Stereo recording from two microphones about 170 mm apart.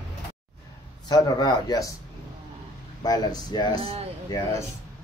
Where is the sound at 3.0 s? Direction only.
25° left (ahead or behind).